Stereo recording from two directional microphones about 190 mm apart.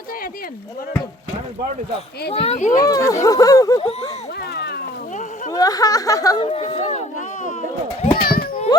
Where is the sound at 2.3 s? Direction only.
35° left (ahead or behind).